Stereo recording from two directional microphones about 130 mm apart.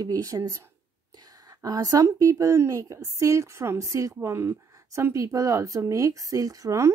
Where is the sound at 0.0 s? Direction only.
25° right (ahead or behind).